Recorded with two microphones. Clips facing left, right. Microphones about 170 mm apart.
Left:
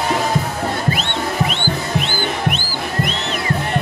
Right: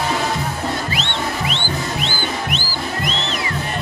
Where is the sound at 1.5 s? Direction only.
45° left (ahead or behind).